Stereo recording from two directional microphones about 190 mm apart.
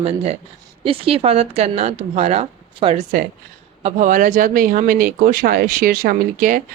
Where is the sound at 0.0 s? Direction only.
30° right (ahead or behind).